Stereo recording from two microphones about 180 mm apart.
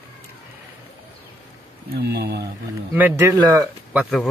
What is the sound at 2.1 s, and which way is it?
Speech, 65° right (ahead or behind).